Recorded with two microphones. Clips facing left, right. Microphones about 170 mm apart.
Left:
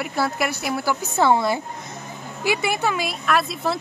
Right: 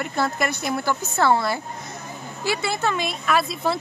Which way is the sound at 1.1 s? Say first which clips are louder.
Left 2 dB; 15° left (ahead or behind).